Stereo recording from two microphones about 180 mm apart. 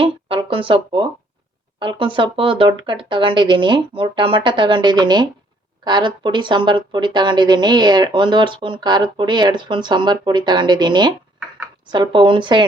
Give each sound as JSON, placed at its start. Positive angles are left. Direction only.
{"t": 0.0, "sound": "speech", "side_deg": -30}